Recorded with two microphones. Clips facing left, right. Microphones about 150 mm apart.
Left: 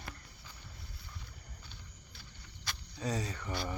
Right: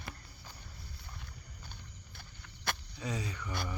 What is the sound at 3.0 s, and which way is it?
Speech, 35° left (ahead or behind).